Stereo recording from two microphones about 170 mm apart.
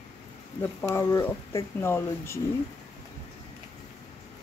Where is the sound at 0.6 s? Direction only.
15° left (ahead or behind).